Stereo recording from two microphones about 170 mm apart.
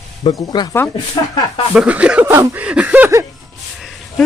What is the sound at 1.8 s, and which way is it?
Speech, 5° right (ahead or behind).